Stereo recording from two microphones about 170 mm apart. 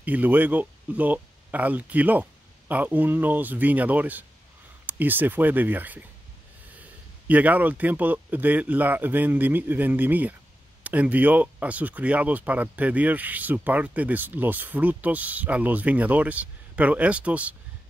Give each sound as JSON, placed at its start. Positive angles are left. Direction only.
{"t": 0.0, "sound": "speech", "side_deg": -10}